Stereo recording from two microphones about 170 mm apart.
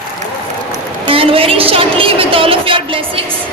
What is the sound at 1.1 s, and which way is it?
A woman's voice, 35° right (ahead or behind).